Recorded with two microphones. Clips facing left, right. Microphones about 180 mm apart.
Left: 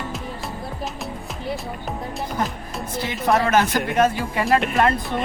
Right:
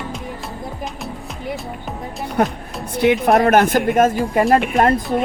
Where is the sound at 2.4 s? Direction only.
65° right (ahead or behind); by 4.4 s 45° right (ahead or behind).